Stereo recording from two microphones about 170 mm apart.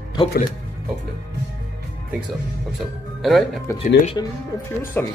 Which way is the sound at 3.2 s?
Centre (ahead or behind).